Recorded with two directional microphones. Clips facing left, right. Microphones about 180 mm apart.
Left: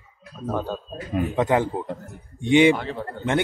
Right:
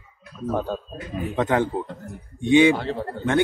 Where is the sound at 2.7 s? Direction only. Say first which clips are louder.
Right 3 dB; 40° right (ahead or behind).